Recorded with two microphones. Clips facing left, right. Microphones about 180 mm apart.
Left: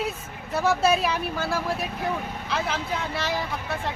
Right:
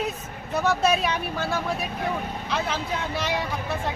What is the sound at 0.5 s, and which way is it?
Speech, 5° left (ahead or behind).